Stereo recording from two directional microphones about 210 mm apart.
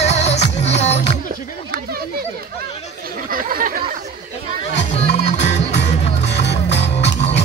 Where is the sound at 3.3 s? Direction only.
40° right (ahead or behind).